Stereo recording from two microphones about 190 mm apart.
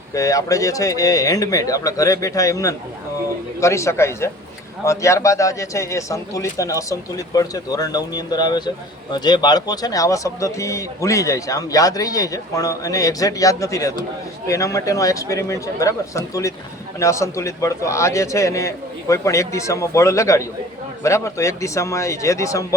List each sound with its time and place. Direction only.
0.1 s speech: 15° left (ahead or behind)